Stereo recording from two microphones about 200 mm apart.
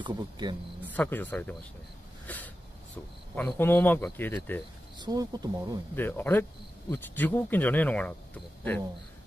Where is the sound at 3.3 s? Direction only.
10° left (ahead or behind).